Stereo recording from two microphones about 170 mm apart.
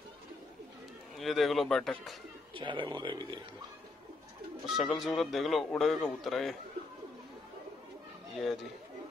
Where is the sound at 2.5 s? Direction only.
30° right (ahead or behind).